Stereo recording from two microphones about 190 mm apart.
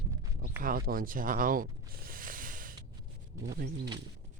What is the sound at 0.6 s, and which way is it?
Speech, 50° right (ahead or behind).